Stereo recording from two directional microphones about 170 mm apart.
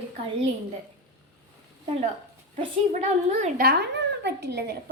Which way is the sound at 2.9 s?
40° right (ahead or behind).